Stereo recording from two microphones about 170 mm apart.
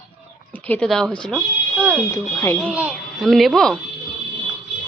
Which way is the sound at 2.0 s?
15° left (ahead or behind).